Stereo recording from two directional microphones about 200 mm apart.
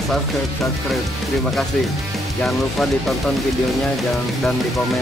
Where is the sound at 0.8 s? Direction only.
Centre (ahead or behind).